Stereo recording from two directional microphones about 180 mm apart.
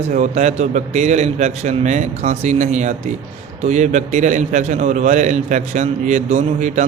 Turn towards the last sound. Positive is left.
turn(degrees=-40)  # may be behind; listen again after turning